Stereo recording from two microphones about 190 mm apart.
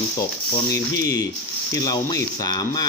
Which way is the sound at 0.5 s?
15° left (ahead or behind).